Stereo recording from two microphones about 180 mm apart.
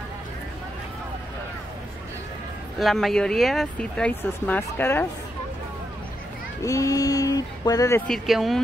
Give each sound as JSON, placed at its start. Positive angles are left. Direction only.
{"t": 2.8, "sound": "speech", "side_deg": 0}
{"t": 6.6, "sound": "speech", "side_deg": 20}
{"t": 8.1, "sound": "speech", "side_deg": 0}